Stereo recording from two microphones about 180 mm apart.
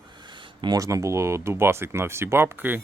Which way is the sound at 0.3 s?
25° right (ahead or behind).